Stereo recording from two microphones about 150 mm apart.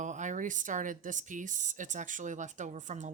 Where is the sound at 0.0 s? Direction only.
55° right (ahead or behind).